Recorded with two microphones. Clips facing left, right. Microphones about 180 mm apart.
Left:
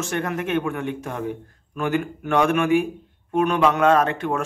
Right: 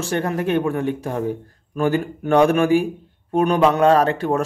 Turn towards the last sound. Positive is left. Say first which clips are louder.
# right 3 dB
turn(degrees=-35)  # may be behind; listen again after turning